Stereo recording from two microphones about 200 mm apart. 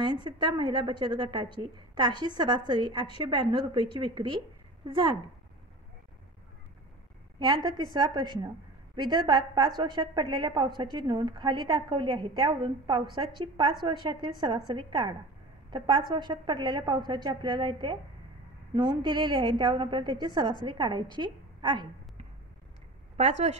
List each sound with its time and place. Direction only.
0.0 s a woman's voice: 20° right (ahead or behind)
7.3 s a woman's voice: 20° right (ahead or behind)